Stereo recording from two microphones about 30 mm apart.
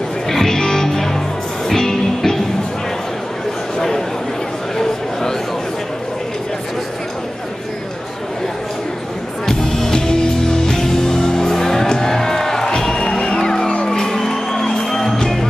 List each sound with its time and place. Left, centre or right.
0.3 s music: centre
3.7 s a sound: centre
9.5 s music: centre